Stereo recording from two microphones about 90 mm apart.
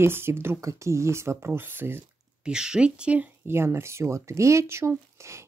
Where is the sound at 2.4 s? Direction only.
10° right (ahead or behind); by 4.9 s 30° right (ahead or behind).